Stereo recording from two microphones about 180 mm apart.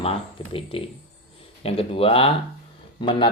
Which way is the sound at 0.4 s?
25° left (ahead or behind).